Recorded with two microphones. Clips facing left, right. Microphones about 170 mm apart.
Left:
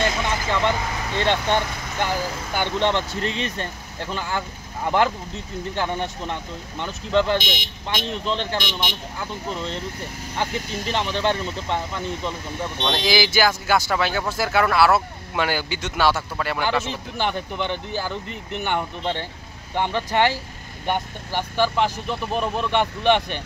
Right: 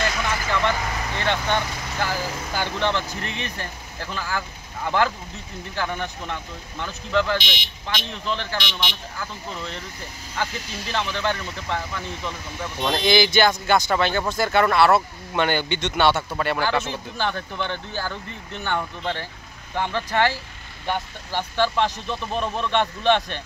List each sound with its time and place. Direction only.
0.0 s speech: 25° left (ahead or behind)
7.3 s speech: 45° left (ahead or behind)
8.3 s speech: 25° left (ahead or behind)
10.3 s speech: 20° left (ahead or behind)
12.8 s speech: centre (ahead or behind)
16.8 s speech: 15° left (ahead or behind)